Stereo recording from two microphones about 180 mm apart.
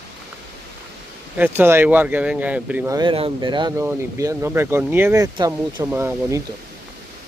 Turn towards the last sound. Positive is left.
turn(degrees=-10)  # may be behind; listen again after turning